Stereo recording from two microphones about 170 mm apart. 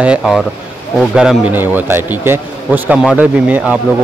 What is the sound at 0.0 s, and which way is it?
Speech, 5° right (ahead or behind).